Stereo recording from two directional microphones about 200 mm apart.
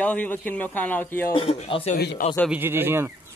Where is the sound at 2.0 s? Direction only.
55° left (ahead or behind).